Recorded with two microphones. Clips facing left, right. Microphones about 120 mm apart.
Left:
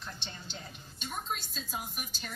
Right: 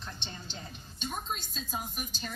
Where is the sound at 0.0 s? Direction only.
25° right (ahead or behind).